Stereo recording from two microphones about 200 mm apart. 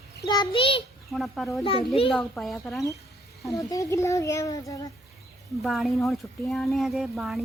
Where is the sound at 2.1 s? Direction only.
Centre (ahead or behind).